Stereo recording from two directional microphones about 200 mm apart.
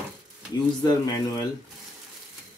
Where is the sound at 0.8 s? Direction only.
20° left (ahead or behind).